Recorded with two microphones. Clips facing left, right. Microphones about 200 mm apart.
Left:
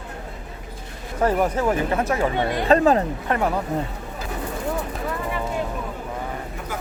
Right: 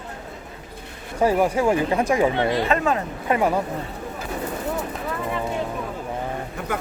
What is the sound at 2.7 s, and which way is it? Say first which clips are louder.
Speech: left 5 dB; 35° left (ahead or behind).